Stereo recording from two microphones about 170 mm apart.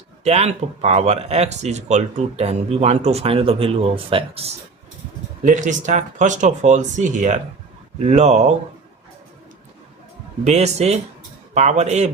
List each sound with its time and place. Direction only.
0.3 s speech: 40° right (ahead or behind)
5.4 s speech: 50° right (ahead or behind)
10.4 s speech: 40° right (ahead or behind)